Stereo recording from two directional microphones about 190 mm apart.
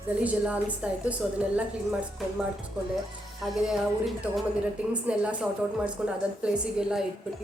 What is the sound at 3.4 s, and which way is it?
Speech, centre (ahead or behind).